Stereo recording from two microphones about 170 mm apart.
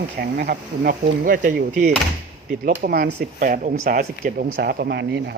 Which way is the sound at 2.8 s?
60° right (ahead or behind).